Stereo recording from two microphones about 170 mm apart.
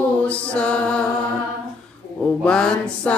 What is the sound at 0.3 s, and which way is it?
Mantra, 5° left (ahead or behind).